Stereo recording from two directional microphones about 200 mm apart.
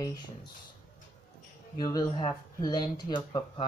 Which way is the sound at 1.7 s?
20° left (ahead or behind).